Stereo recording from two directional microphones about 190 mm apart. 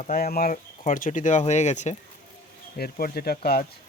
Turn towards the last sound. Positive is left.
turn(degrees=55)  # may be behind; listen again after turning